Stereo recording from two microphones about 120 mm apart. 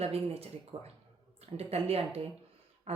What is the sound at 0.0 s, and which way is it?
Speech, 55° right (ahead or behind).